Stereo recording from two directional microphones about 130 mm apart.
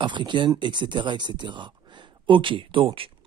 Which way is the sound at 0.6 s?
35° right (ahead or behind).